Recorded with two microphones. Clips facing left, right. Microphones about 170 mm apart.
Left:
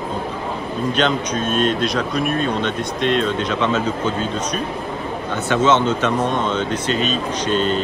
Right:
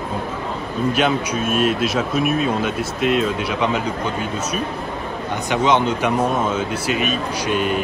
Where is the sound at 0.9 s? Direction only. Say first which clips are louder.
Left 1 dB; 10° right (ahead or behind).